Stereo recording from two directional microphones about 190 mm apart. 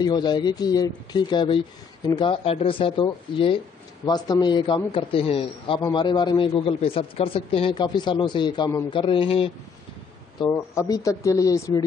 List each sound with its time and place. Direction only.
0.0 s a man's voice: 20° left (ahead or behind)
10.4 s speech: 15° left (ahead or behind)